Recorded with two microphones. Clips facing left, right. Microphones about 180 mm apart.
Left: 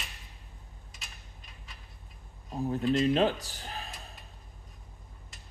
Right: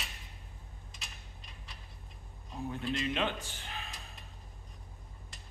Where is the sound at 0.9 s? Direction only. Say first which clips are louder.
Left 1 dB; centre (ahead or behind).